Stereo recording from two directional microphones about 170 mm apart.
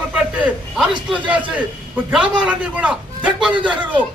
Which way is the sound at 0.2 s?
5° right (ahead or behind).